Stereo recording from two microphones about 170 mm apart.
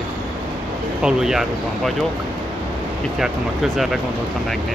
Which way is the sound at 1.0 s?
5° right (ahead or behind).